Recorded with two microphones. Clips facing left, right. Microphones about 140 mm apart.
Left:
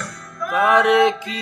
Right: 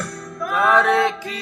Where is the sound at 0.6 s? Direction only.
15° left (ahead or behind).